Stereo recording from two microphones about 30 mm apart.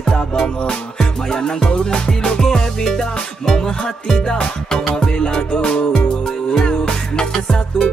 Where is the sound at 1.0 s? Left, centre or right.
Left.